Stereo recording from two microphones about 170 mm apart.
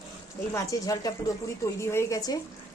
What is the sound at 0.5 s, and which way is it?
A woman's voice, 20° left (ahead or behind).